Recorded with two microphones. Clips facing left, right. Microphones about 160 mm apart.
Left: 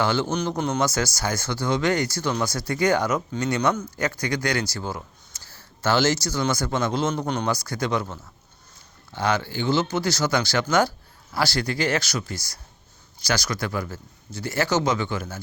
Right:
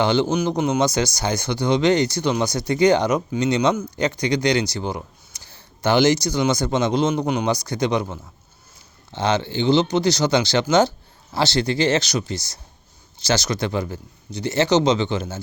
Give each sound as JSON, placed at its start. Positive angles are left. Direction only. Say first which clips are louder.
{"t": 0.0, "sound": "speech", "louder": "right 4 dB", "side_deg": -20}